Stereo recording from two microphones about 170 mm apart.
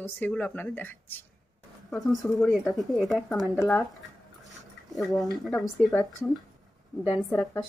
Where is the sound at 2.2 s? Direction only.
Centre (ahead or behind).